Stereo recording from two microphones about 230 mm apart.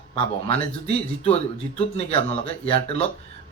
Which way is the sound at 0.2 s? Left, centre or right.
Left.